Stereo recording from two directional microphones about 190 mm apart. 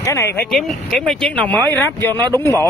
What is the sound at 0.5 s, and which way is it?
Speech, 5° left (ahead or behind).